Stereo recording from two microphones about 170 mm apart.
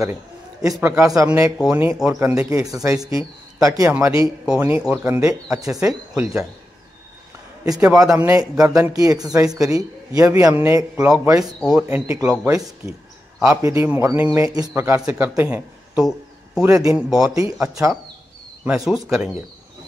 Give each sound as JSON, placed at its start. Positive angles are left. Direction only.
{"t": 0.0, "sound": "a man's voice", "side_deg": -20}
{"t": 6.1, "sound": "speech", "side_deg": -5}
{"t": 7.6, "sound": "speech", "side_deg": -20}
{"t": 11.6, "sound": "speech", "side_deg": -5}
{"t": 12.4, "sound": "speech", "side_deg": -20}
{"t": 13.4, "sound": "a man's voice", "side_deg": -5}
{"t": 16.6, "sound": "speech", "side_deg": -15}
{"t": 18.6, "sound": "speech", "side_deg": -5}